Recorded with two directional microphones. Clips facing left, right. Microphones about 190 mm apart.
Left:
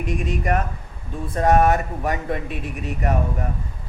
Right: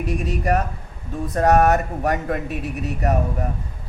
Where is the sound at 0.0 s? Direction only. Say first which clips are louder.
Right 1 dB; 40° right (ahead or behind).